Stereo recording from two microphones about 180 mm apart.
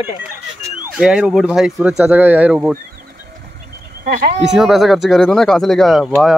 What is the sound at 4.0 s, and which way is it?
Speech, 55° right (ahead or behind).